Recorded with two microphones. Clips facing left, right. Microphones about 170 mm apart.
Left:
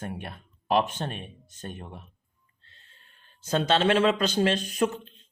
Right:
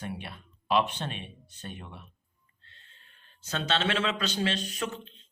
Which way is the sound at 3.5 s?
45° left (ahead or behind).